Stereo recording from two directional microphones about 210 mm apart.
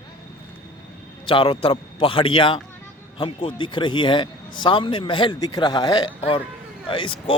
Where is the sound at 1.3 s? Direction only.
25° left (ahead or behind).